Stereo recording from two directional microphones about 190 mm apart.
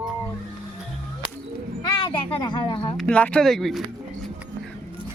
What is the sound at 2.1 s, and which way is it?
Speech, 25° left (ahead or behind).